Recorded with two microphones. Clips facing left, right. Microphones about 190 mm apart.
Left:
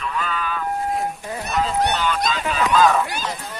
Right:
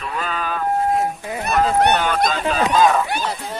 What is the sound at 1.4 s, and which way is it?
Speech, 55° right (ahead or behind).